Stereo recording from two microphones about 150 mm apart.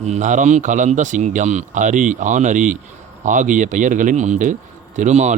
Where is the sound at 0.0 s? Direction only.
55° right (ahead or behind).